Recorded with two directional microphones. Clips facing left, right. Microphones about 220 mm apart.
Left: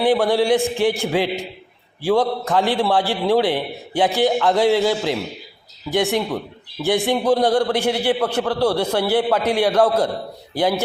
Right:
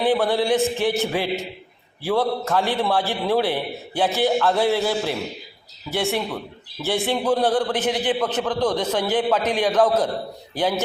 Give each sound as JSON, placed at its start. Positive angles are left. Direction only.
{"t": 0.0, "sound": "a man's voice", "side_deg": 15}